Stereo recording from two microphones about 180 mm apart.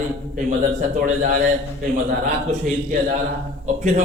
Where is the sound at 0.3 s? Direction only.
45° right (ahead or behind).